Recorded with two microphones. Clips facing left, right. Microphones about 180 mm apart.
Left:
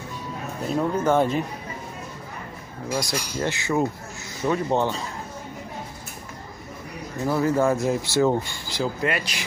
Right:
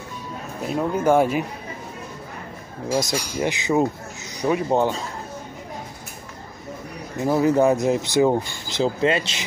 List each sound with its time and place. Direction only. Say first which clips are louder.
0.7 s speech: right 2 dB; 10° right (ahead or behind)
3.0 s speech: right 2 dB; 20° right (ahead or behind)
7.2 s speech: right 4 dB; 20° right (ahead or behind)